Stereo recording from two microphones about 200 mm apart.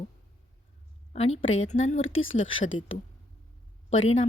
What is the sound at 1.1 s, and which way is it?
Speech, 30° left (ahead or behind).